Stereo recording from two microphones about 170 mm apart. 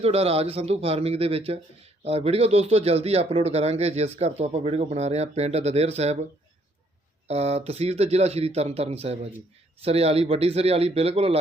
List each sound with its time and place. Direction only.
0.0 s speech: 35° right (ahead or behind)
7.3 s speech: 40° right (ahead or behind)